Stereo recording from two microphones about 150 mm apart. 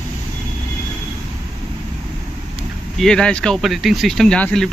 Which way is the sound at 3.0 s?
5° left (ahead or behind).